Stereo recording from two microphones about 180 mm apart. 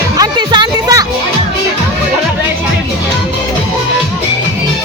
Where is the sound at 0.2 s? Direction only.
25° right (ahead or behind).